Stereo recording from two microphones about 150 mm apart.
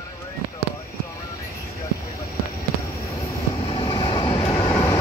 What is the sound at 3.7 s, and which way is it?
Vehicle, 35° left (ahead or behind).